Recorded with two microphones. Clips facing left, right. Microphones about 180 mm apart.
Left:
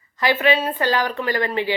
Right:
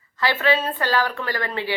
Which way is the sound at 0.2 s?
15° left (ahead or behind).